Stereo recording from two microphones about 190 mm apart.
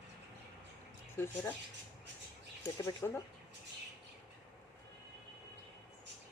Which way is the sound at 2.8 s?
15° left (ahead or behind).